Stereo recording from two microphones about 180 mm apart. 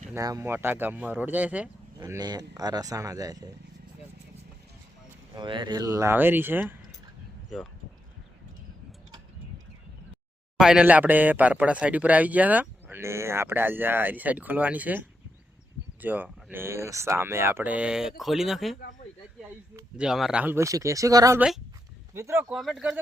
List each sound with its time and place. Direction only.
0.1 s a man's voice: 20° right (ahead or behind)
2.0 s speech: 20° right (ahead or behind)
5.3 s a man's voice: 25° right (ahead or behind); by 7.7 s centre (ahead or behind)
10.6 s a man's voice: 5° right (ahead or behind)
20.0 s a man's voice: centre (ahead or behind)
22.4 s speech: centre (ahead or behind)